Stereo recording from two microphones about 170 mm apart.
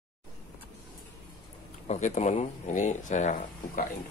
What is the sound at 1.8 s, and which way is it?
Speech, 45° left (ahead or behind).